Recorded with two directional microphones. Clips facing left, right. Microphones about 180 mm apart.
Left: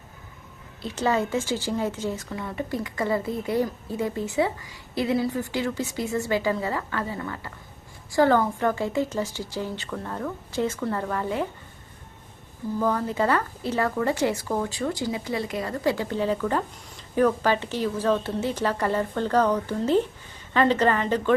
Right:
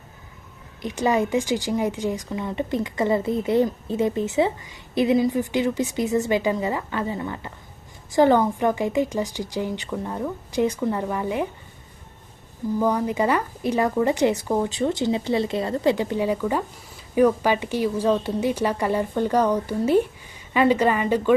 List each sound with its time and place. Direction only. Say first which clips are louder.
0.8 s a woman's voice: right 3 dB; 15° right (ahead or behind)
12.8 s a woman's voice: right 2 dB; 15° right (ahead or behind)